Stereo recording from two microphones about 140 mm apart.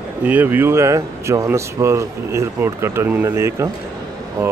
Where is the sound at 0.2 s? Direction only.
10° right (ahead or behind).